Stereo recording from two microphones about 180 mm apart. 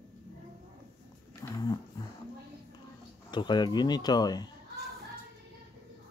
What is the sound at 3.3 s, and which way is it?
Speech, 25° left (ahead or behind).